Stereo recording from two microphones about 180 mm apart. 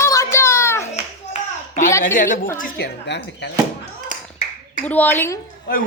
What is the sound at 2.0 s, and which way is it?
A woman's voice, 45° left (ahead or behind).